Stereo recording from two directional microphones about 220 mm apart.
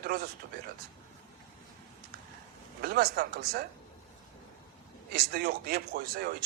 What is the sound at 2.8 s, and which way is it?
Speech, 45° right (ahead or behind).